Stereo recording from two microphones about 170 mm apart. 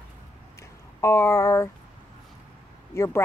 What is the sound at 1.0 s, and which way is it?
Speech, 15° left (ahead or behind).